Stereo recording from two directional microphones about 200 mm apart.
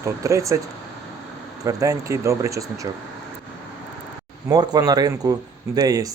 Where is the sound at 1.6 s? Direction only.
15° right (ahead or behind).